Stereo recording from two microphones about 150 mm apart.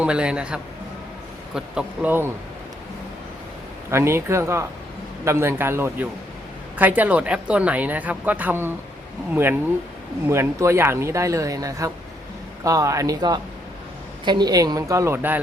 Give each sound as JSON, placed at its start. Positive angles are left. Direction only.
{"t": 0.0, "sound": "speech", "side_deg": -5}
{"t": 3.9, "sound": "speech", "side_deg": -15}